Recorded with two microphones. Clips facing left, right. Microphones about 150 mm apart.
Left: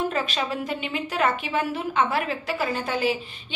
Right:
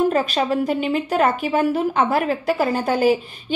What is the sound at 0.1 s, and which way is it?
A woman's voice, 40° right (ahead or behind).